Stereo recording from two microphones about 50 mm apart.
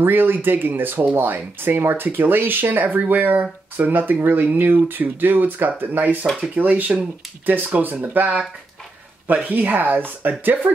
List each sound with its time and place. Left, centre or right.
0.0 s speech: right